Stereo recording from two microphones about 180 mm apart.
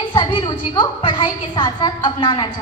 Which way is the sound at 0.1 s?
25° left (ahead or behind).